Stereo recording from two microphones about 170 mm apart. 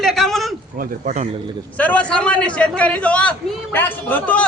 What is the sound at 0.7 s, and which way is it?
Speech, 55° right (ahead or behind).